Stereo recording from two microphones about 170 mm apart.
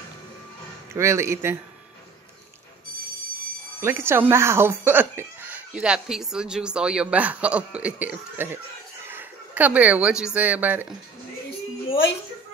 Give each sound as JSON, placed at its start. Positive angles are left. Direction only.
{"t": 0.9, "sound": "speech", "side_deg": -15}
{"t": 3.8, "sound": "a woman's voice", "side_deg": -15}